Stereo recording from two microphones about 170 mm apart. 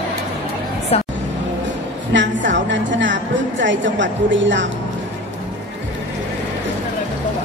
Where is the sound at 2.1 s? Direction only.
90° right.